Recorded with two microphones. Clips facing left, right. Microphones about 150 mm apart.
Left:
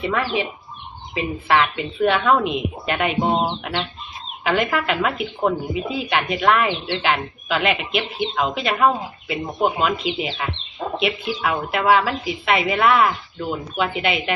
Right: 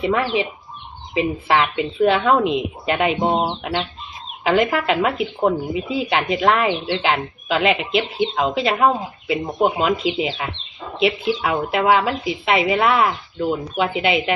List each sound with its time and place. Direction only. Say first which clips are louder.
0.0 s speech: right 3 dB; 20° right (ahead or behind)
3.3 s chicken: right 1 dB; 15° right (ahead or behind)
4.4 s speech: right 3 dB; 20° right (ahead or behind)